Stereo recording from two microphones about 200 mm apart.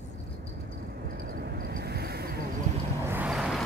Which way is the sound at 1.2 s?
50° right (ahead or behind).